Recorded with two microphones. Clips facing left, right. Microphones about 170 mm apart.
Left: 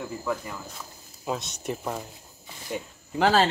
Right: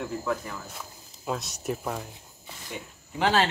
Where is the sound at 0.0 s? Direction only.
5° left (ahead or behind).